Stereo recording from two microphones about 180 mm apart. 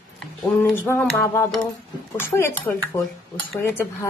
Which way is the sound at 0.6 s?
10° left (ahead or behind).